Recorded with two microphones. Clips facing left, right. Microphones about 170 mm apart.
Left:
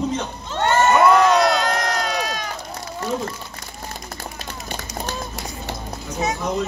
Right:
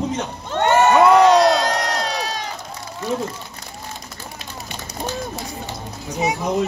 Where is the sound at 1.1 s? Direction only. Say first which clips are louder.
Right 3 dB; 35° right (ahead or behind).